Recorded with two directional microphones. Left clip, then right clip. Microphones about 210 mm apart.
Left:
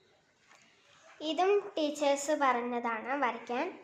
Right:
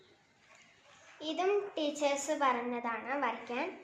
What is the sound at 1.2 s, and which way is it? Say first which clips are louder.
A woman's voice: left 3 dB; 40° left (ahead or behind).